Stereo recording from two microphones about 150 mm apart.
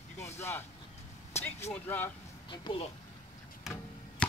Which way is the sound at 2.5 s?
35° left (ahead or behind).